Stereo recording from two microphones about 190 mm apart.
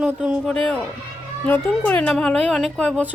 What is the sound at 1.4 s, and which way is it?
Speech, 10° left (ahead or behind).